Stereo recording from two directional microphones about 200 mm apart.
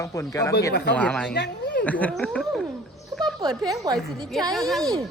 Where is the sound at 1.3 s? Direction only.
55° left (ahead or behind).